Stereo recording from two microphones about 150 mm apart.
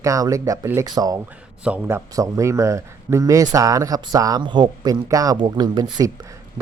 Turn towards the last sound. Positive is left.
turn(degrees=-30)  # may be behind; listen again after turning